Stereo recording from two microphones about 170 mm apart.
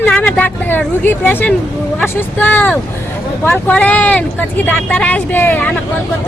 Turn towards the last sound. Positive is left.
turn(degrees=10)  # may be behind; listen again after turning